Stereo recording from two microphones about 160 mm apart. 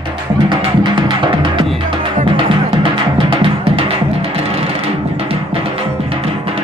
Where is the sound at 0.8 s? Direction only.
30° right (ahead or behind).